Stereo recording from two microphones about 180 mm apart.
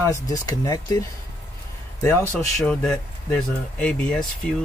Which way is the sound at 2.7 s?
5° left (ahead or behind).